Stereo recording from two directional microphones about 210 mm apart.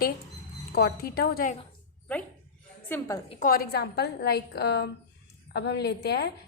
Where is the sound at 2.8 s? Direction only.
10° left (ahead or behind).